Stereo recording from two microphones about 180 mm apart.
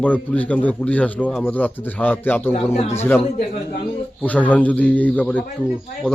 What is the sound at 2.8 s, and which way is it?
Speech, 35° left (ahead or behind).